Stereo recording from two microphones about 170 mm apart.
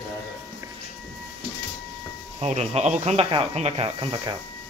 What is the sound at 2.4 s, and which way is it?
Speech, 40° right (ahead or behind).